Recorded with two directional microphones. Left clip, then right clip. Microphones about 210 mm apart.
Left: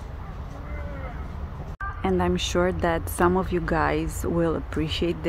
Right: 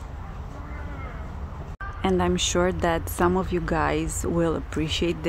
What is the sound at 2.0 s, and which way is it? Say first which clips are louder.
A woman's voice: right 2 dB; 10° right (ahead or behind).